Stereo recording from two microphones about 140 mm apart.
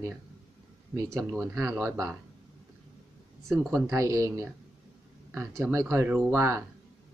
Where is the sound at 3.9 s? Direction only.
25° right (ahead or behind).